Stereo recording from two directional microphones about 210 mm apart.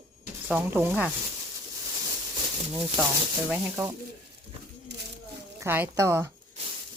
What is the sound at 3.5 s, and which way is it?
Speech, 15° right (ahead or behind).